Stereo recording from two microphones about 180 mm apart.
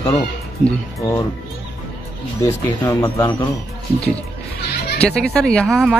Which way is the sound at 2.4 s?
15° left (ahead or behind).